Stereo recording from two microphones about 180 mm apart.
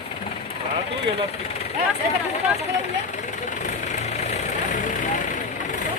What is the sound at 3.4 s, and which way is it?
Vehicle, 40° left (ahead or behind).